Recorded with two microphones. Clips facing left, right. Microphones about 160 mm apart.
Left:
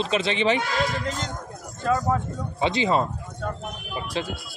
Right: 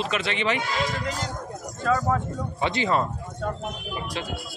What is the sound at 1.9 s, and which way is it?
A woman's voice, 20° left (ahead or behind).